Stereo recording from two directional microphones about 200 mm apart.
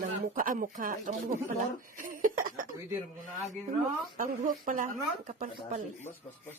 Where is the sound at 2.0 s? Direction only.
45° right (ahead or behind).